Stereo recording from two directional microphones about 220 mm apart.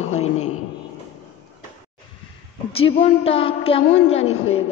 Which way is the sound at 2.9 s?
25° left (ahead or behind).